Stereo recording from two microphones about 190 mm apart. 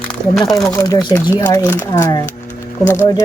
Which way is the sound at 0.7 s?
15° left (ahead or behind).